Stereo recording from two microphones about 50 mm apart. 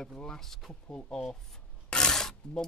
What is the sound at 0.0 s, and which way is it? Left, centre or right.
Speech, centre.